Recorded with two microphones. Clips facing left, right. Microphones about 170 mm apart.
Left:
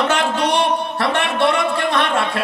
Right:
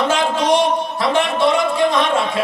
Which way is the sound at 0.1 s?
65° left (ahead or behind).